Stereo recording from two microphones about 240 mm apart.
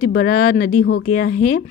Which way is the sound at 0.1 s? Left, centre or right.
Left.